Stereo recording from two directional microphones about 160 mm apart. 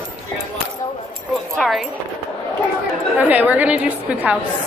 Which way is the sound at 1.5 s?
Centre (ahead or behind).